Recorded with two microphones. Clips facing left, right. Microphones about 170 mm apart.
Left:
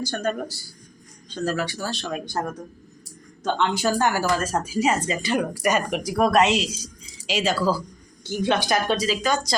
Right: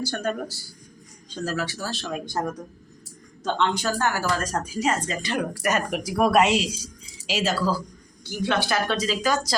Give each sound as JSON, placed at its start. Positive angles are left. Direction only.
{"t": 0.0, "sound": "speech", "side_deg": -5}
{"t": 3.4, "sound": "speech", "side_deg": 5}
{"t": 8.2, "sound": "speech", "side_deg": 20}
{"t": 9.0, "sound": "speech", "side_deg": -5}